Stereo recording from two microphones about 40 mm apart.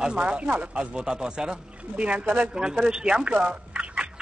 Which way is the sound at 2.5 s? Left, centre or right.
Right.